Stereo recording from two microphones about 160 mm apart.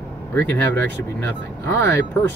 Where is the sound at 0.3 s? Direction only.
15° left (ahead or behind).